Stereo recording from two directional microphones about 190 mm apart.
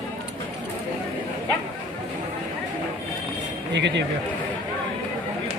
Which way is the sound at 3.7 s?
65° right (ahead or behind).